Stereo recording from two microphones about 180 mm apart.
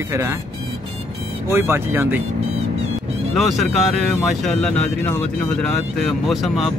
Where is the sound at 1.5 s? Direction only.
15° right (ahead or behind).